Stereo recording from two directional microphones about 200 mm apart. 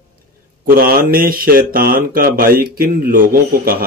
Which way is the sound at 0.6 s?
45° right (ahead or behind).